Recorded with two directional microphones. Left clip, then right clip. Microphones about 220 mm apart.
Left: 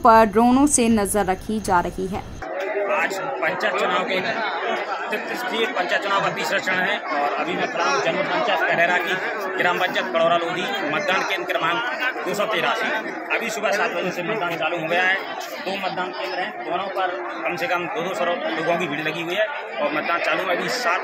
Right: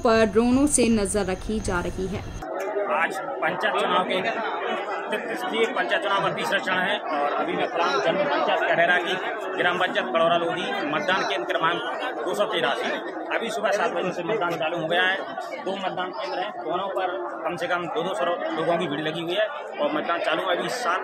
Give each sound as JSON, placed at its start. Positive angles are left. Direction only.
{"t": 0.0, "sound": "speech", "side_deg": 25}
{"t": 0.4, "sound": "a woman's voice", "side_deg": 10}
{"t": 3.0, "sound": "speech", "side_deg": 5}
{"t": 5.6, "sound": "speech", "side_deg": 0}
{"t": 8.7, "sound": "speech", "side_deg": 0}
{"t": 14.9, "sound": "speech", "side_deg": 5}